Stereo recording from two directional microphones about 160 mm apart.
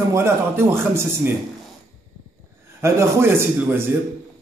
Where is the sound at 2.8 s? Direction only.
15° right (ahead or behind).